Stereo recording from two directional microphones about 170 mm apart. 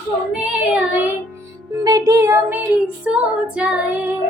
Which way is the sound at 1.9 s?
20° right (ahead or behind).